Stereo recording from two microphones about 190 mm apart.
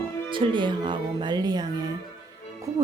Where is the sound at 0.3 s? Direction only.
25° right (ahead or behind).